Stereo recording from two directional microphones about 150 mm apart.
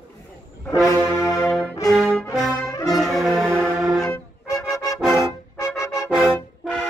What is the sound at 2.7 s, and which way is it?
Brass instrument, 25° left (ahead or behind).